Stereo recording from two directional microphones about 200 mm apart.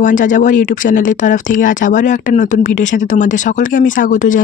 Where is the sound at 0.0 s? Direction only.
40° left (ahead or behind).